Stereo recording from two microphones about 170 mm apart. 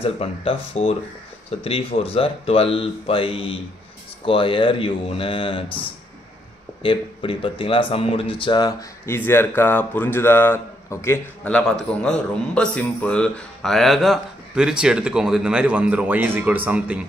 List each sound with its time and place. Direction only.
0.0 s speech: 35° left (ahead or behind); by 17.0 s 5° right (ahead or behind)